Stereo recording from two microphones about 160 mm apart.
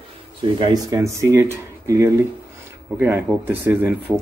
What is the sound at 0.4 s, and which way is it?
Speech, 30° right (ahead or behind).